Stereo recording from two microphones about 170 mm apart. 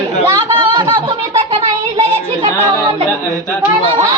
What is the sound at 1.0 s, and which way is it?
Music, 30° right (ahead or behind).